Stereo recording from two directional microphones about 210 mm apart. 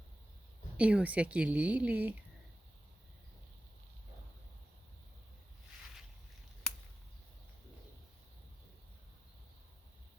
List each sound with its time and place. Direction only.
0.8 s a woman's voice: 5° right (ahead or behind)